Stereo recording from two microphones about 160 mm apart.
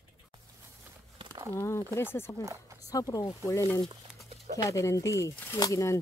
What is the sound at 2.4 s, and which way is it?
Speech, 20° right (ahead or behind).